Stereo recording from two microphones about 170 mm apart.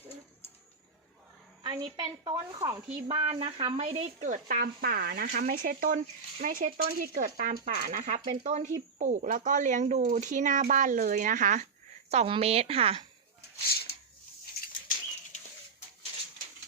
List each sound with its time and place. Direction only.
1.6 s a woman's voice: 25° right (ahead or behind)
3.2 s speech: 35° right (ahead or behind)
4.2 s speech: 55° right (ahead or behind)
12.1 s speech: 35° right (ahead or behind)
13.7 s a sound: 70° left (ahead or behind)